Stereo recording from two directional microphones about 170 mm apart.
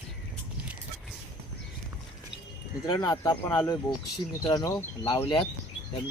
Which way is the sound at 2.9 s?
25° left (ahead or behind).